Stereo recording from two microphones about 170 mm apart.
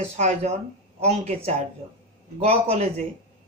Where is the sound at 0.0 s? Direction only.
40° right (ahead or behind).